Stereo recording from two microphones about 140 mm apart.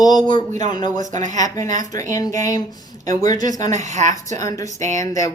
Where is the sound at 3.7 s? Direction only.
60° right (ahead or behind).